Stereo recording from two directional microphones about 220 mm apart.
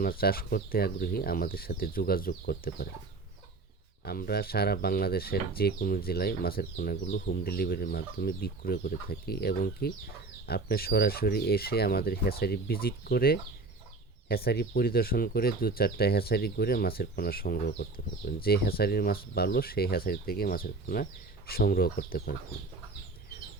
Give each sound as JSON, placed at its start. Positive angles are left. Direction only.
{"t": 0.0, "sound": "speech", "side_deg": 40}
{"t": 4.0, "sound": "speech", "side_deg": 45}